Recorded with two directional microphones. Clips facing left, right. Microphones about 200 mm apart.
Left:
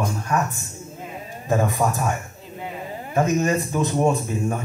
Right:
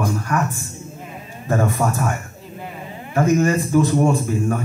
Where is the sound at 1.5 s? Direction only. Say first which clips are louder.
Right 1 dB; 15° left (ahead or behind).